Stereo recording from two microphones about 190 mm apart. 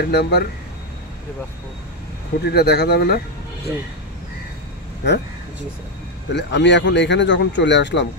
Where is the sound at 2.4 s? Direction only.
60° left (ahead or behind).